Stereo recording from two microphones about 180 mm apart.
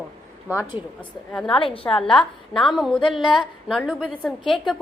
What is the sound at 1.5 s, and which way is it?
Speech, 30° left (ahead or behind).